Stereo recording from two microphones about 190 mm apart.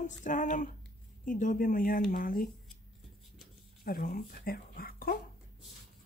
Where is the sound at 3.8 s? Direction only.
50° left (ahead or behind).